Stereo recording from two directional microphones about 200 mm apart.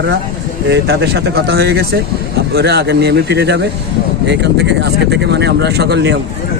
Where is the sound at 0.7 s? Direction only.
55° right (ahead or behind).